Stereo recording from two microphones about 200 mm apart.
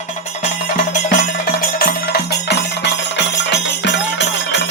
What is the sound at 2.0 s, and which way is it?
Music, 55° left (ahead or behind).